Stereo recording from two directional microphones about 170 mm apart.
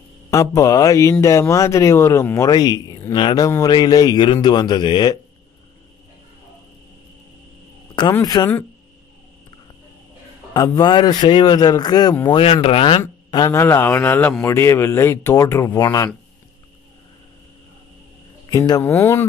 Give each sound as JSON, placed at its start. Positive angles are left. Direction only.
{"t": 0.3, "sound": "speech", "side_deg": 20}
{"t": 8.1, "sound": "speech", "side_deg": 20}
{"t": 10.5, "sound": "speech", "side_deg": 25}
{"t": 13.3, "sound": "a man's voice", "side_deg": 20}
{"t": 18.5, "sound": "a man's voice", "side_deg": 20}